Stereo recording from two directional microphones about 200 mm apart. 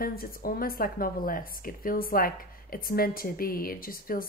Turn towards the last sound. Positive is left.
turn(degrees=45)  # may be behind; listen again after turning